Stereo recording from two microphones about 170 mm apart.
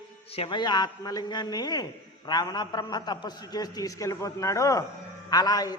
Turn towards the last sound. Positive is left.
turn(degrees=20)  # may be behind; listen again after turning